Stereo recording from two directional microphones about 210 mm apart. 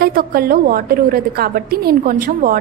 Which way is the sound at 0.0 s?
45° right (ahead or behind).